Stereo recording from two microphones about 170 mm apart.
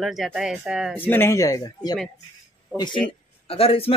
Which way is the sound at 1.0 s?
15° left (ahead or behind).